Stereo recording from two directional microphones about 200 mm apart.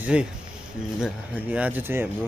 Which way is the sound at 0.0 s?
5° right (ahead or behind).